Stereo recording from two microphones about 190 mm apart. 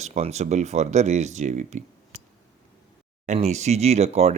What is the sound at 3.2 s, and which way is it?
Speech, 35° right (ahead or behind).